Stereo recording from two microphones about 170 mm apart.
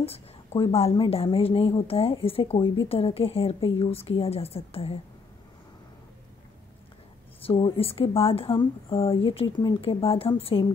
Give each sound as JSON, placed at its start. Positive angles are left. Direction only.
{"t": 0.0, "sound": "speech", "side_deg": 35}
{"t": 7.4, "sound": "speech", "side_deg": 30}